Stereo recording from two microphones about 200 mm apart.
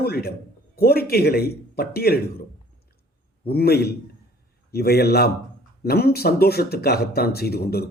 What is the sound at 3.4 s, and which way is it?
Speech, 50° left (ahead or behind).